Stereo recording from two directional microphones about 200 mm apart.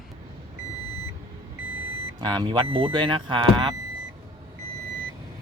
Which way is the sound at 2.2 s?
25° right (ahead or behind).